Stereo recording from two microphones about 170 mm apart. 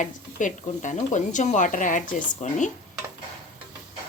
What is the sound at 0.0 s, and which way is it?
Speech, 50° left (ahead or behind).